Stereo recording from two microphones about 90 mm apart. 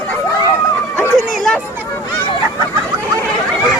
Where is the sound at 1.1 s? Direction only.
5° left (ahead or behind).